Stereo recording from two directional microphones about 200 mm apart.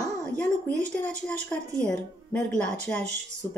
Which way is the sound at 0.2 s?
5° left (ahead or behind).